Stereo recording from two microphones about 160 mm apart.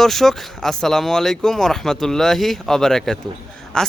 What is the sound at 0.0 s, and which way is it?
Speech, centre (ahead or behind).